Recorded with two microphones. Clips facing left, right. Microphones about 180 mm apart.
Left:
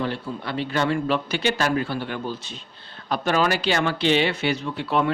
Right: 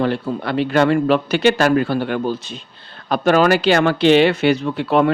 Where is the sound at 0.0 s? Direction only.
70° right (ahead or behind).